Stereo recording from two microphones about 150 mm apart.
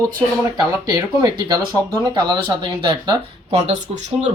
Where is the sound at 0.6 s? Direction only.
25° right (ahead or behind).